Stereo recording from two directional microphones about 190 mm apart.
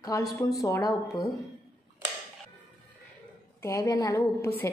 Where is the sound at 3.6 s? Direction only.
15° left (ahead or behind).